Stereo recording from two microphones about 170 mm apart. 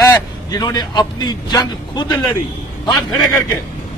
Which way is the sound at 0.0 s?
20° left (ahead or behind).